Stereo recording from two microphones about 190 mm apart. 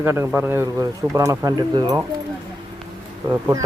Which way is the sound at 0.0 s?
15° right (ahead or behind).